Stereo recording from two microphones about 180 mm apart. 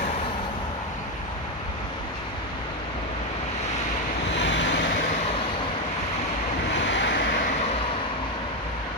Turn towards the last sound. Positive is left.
turn(degrees=75)  # may be behind; listen again after turning